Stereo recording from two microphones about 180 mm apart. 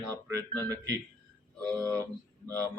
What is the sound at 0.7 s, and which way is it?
Speech, 20° right (ahead or behind).